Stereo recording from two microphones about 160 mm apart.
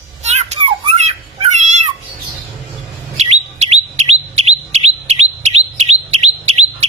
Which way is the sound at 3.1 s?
45° right (ahead or behind).